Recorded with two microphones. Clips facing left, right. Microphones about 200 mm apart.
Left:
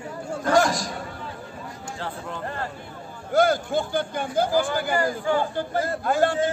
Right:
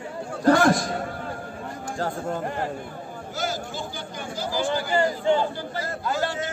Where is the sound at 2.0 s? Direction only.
45° right (ahead or behind).